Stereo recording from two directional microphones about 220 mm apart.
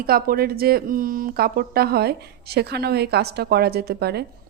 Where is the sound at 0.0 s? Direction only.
45° right (ahead or behind).